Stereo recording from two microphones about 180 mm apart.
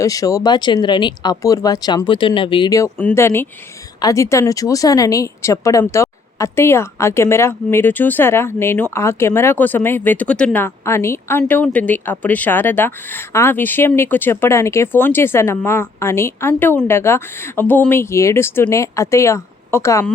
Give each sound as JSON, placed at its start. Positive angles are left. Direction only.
{"t": 0.0, "sound": "a woman's voice", "side_deg": 20}